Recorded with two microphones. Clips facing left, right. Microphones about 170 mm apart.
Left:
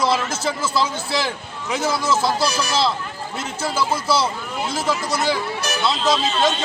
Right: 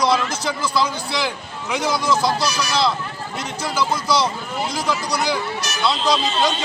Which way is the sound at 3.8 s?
5° left (ahead or behind).